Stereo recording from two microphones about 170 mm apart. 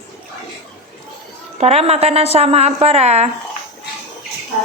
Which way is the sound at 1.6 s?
40° right (ahead or behind).